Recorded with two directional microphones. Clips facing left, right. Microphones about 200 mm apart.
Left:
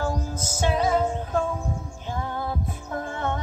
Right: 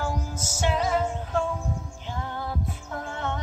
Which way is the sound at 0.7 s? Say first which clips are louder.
Left 4 dB; 40° left (ahead or behind).